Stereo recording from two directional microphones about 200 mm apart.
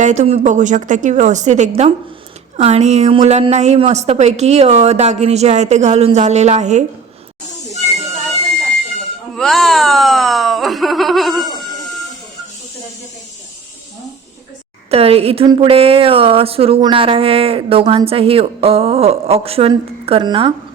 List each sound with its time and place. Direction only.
0.0 s a woman's voice: 35° right (ahead or behind)
9.3 s speech: centre (ahead or behind)
14.8 s a woman's voice: 30° right (ahead or behind)